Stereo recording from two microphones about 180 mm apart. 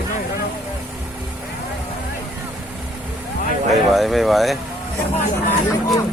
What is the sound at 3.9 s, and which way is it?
Speech, centre (ahead or behind).